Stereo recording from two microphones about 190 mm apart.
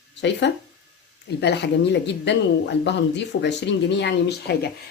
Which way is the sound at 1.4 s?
65° left (ahead or behind).